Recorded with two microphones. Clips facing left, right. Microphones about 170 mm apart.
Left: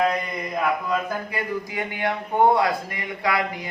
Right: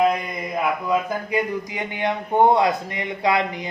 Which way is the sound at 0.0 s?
10° right (ahead or behind).